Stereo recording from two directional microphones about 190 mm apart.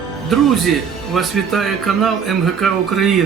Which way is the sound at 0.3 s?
Centre (ahead or behind).